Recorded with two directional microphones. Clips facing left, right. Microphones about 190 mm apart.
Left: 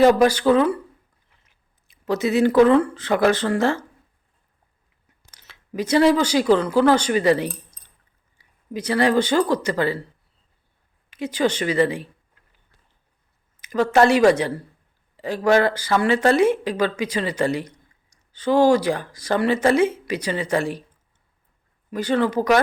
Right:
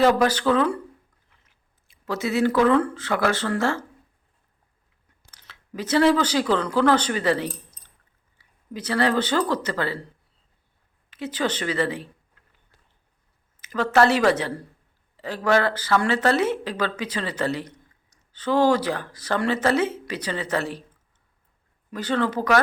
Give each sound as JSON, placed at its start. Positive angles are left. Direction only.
{"t": 0.0, "sound": "speech", "side_deg": 15}
{"t": 1.9, "sound": "speech", "side_deg": 20}
{"t": 5.3, "sound": "speech", "side_deg": 15}
{"t": 11.1, "sound": "speech", "side_deg": 15}
{"t": 13.6, "sound": "speech", "side_deg": 15}
{"t": 21.8, "sound": "speech", "side_deg": 10}